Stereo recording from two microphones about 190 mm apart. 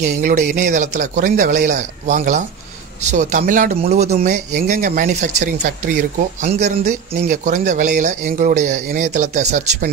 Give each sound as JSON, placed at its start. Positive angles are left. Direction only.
{"t": 0.2, "sound": "speech", "side_deg": -45}